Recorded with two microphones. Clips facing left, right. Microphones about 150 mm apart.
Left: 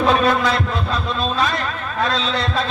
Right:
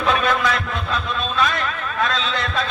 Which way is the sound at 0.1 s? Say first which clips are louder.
Right 1 dB; 35° left (ahead or behind).